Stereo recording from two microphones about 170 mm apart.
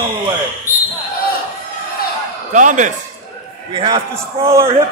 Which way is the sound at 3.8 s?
30° right (ahead or behind).